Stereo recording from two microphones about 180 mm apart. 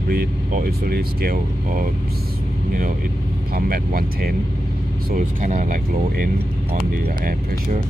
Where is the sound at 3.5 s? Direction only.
55° right (ahead or behind).